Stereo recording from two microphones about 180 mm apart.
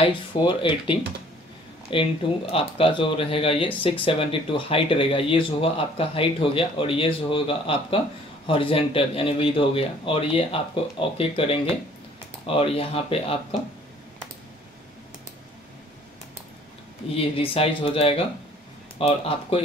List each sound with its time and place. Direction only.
0.0 s speech: 25° left (ahead or behind)
17.1 s speech: 35° left (ahead or behind)